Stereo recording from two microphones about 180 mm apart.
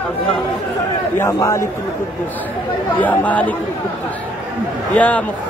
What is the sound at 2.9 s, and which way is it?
Speech, 10° left (ahead or behind).